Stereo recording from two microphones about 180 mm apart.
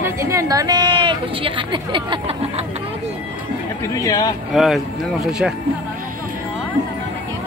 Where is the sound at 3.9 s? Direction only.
20° left (ahead or behind).